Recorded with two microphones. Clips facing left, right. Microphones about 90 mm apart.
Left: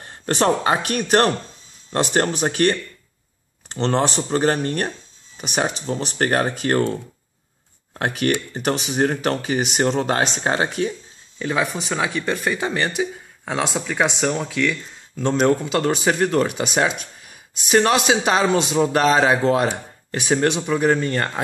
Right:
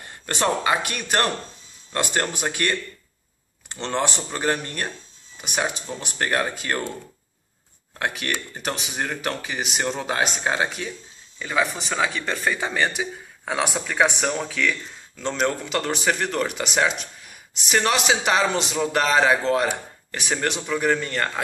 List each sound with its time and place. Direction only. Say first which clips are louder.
0.0 s speech: left 5 dB; 35° left (ahead or behind)
1.9 s speech: left 5 dB; 30° left (ahead or behind)
3.7 s speech: left 5 dB; 35° left (ahead or behind)
8.6 s speech: left 8 dB; 40° left (ahead or behind)
11.5 s speech: even; 15° left (ahead or behind)
15.2 s speech: left 6 dB; 20° left (ahead or behind)